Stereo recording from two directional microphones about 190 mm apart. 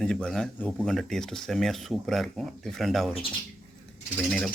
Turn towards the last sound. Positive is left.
turn(degrees=0)  # may be behind; listen again after turning